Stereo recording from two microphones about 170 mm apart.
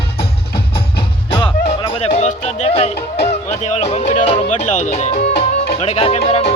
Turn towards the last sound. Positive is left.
turn(degrees=35)  # may be behind; listen again after turning